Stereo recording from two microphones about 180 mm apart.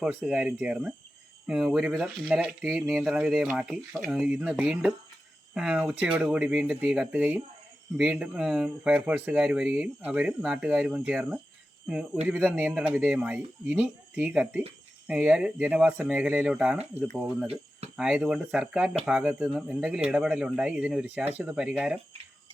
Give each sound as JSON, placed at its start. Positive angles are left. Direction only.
{"t": 0.0, "sound": "speech", "side_deg": -5}
{"t": 17.4, "sound": "a sound", "side_deg": -35}
{"t": 17.9, "sound": "speech", "side_deg": -5}